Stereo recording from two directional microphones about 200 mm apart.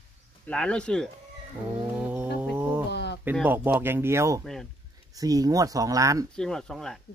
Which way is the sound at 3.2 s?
10° right (ahead or behind).